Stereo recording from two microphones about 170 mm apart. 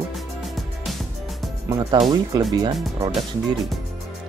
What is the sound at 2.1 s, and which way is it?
Speech, 20° right (ahead or behind).